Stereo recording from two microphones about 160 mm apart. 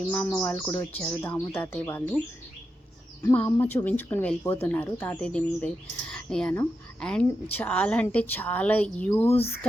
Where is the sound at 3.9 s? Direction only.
10° left (ahead or behind).